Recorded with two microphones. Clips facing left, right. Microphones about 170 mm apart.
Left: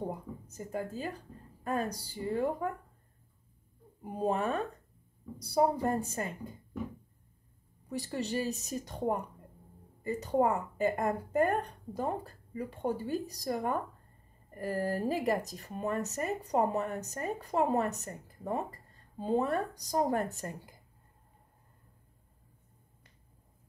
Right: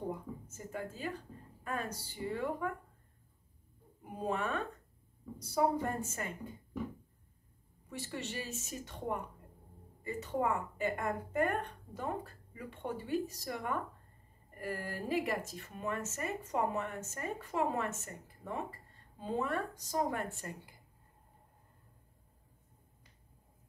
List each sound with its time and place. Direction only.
0.1 s a sound: 35° left (ahead or behind)
1.6 s speech: 35° left (ahead or behind)
4.0 s speech: 35° left (ahead or behind)
7.9 s speech: 35° left (ahead or behind)